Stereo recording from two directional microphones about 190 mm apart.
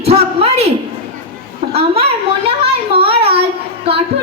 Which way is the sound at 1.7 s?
30° right (ahead or behind).